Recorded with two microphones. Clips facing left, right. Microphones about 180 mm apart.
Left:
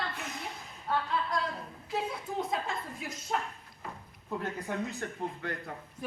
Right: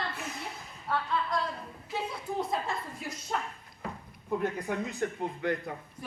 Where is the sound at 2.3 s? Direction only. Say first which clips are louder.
Right 2 dB; centre (ahead or behind).